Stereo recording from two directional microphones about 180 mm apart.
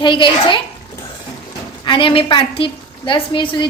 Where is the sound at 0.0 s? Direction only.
25° left (ahead or behind).